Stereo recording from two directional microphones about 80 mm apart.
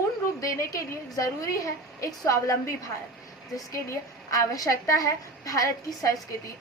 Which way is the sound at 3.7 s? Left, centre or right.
Left.